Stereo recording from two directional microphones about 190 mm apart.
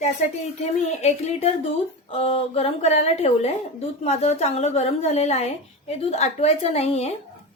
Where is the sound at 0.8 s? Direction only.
35° left (ahead or behind).